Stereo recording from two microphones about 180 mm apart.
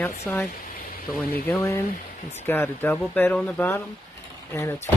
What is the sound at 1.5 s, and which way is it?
Speech, 15° left (ahead or behind).